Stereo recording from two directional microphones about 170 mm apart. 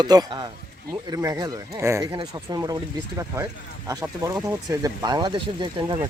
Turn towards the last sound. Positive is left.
turn(degrees=-30)  # may be behind; listen again after turning